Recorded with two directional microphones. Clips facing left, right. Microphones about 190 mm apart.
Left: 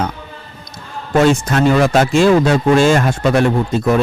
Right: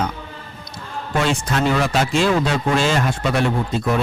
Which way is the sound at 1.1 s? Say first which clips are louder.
Left 8 dB; 45° left (ahead or behind).